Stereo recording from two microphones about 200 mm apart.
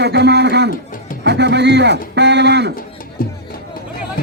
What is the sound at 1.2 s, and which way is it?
Speech, 55° right (ahead or behind).